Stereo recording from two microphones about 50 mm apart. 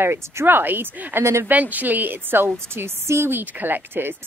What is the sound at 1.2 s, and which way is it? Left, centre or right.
Speech, right.